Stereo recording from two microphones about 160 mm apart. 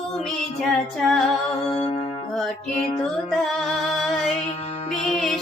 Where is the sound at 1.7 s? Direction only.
30° left (ahead or behind).